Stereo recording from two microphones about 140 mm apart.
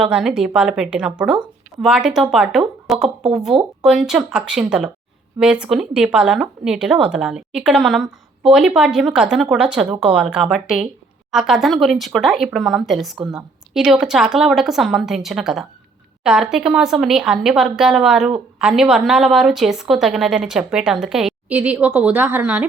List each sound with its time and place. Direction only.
0.0 s a woman's voice: 5° right (ahead or behind)
3.5 s speech: 25° right (ahead or behind)
3.8 s a woman's voice: 5° right (ahead or behind)